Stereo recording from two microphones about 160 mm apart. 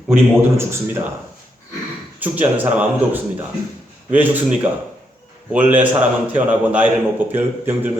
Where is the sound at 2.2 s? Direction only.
10° right (ahead or behind).